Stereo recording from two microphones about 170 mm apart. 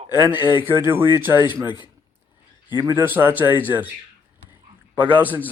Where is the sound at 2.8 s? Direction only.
20° right (ahead or behind).